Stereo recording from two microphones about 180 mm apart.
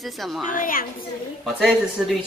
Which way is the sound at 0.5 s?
50° left (ahead or behind).